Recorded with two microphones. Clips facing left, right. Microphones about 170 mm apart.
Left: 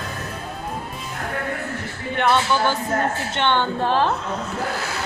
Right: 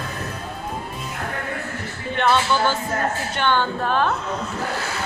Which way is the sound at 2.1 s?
15° left (ahead or behind).